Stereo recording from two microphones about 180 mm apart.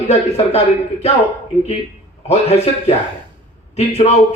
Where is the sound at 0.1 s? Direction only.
35° left (ahead or behind).